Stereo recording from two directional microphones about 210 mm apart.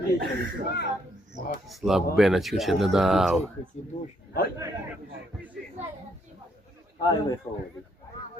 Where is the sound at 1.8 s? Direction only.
Centre (ahead or behind).